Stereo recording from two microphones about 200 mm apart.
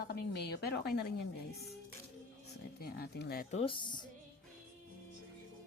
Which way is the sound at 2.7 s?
50° left (ahead or behind).